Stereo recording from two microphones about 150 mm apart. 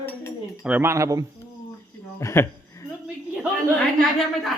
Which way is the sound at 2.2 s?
20° left (ahead or behind).